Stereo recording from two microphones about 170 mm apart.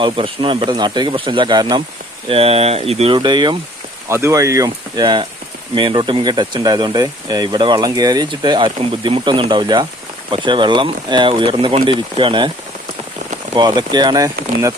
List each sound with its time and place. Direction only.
0.0 s speech: 30° right (ahead or behind)
2.3 s speech: 35° right (ahead or behind)
13.6 s speech: 25° right (ahead or behind)